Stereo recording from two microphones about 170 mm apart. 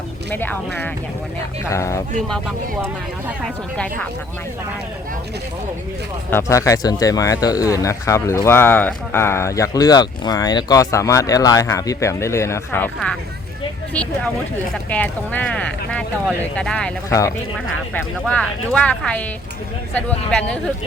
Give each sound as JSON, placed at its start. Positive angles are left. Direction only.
{"t": 0.3, "sound": "speech", "side_deg": 10}
{"t": 3.4, "sound": "speech", "side_deg": 5}
{"t": 6.3, "sound": "speech", "side_deg": 20}
{"t": 14.8, "sound": "speech", "side_deg": 10}
{"t": 17.1, "sound": "speech", "side_deg": 20}
{"t": 17.9, "sound": "speech", "side_deg": 5}